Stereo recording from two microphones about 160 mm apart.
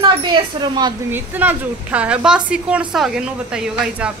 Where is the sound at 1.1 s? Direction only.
10° right (ahead or behind).